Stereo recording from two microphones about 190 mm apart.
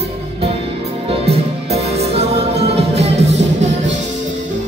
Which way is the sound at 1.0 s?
30° right (ahead or behind).